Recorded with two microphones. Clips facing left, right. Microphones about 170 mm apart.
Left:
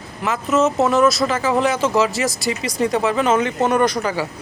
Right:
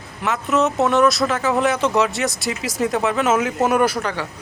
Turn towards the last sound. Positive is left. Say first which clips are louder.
# left 3 dB
turn(degrees=10)  # may be behind; listen again after turning